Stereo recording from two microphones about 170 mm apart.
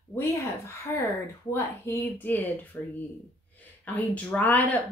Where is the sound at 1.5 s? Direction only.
15° left (ahead or behind).